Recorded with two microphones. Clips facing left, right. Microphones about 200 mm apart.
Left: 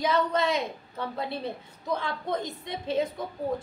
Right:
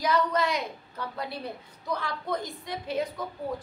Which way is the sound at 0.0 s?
25° left (ahead or behind).